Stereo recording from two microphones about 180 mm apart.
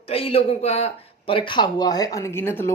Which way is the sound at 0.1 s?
30° left (ahead or behind).